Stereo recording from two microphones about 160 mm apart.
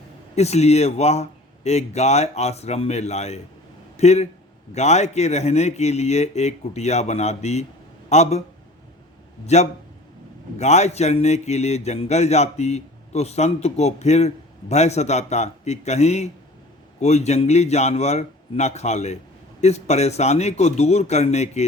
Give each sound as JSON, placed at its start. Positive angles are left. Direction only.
{"t": 0.3, "sound": "speech", "side_deg": 40}
{"t": 9.5, "sound": "speech", "side_deg": 45}